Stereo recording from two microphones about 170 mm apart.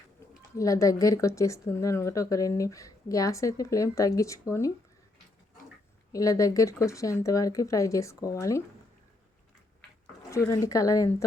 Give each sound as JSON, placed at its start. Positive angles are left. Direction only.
{"t": 0.5, "sound": "speech", "side_deg": 20}
{"t": 6.1, "sound": "speech", "side_deg": 20}
{"t": 10.3, "sound": "speech", "side_deg": 20}